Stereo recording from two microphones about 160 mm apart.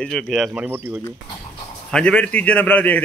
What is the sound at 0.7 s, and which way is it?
Speech, 15° right (ahead or behind).